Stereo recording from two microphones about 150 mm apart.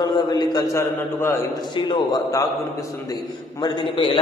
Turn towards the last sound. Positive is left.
turn(degrees=30)  # may be behind; listen again after turning